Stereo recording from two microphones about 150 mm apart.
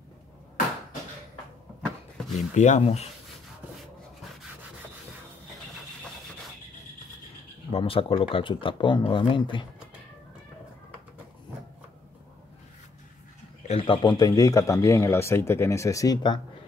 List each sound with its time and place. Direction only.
2.3 s speech: 50° left (ahead or behind)
7.7 s speech: 40° left (ahead or behind)
13.7 s speech: 35° left (ahead or behind)